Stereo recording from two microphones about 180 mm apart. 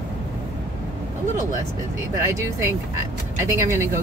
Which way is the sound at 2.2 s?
15° right (ahead or behind).